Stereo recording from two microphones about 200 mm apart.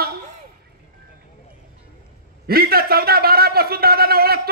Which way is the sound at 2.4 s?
50° right (ahead or behind).